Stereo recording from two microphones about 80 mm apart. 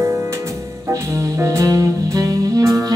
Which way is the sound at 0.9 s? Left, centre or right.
Right.